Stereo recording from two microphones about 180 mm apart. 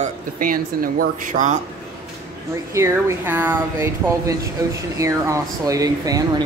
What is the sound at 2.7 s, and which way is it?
Speech, 15° right (ahead or behind).